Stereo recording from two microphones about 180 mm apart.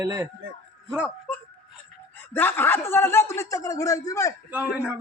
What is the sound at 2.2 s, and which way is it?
Speech, 10° left (ahead or behind).